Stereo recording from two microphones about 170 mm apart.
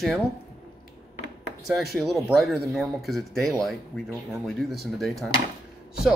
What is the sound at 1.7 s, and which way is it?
Speech, centre (ahead or behind).